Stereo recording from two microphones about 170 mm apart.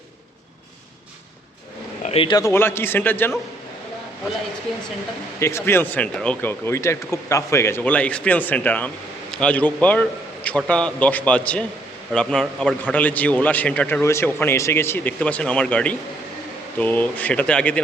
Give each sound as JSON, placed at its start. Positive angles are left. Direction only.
{"t": 2.0, "sound": "a man's voice", "side_deg": 35}
{"t": 2.3, "sound": "a man's voice", "side_deg": 15}
{"t": 5.4, "sound": "a man's voice", "side_deg": 15}